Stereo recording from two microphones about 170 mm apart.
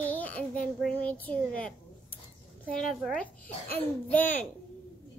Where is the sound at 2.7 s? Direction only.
5° left (ahead or behind).